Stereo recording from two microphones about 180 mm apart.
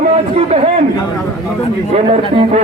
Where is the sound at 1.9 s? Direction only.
35° right (ahead or behind).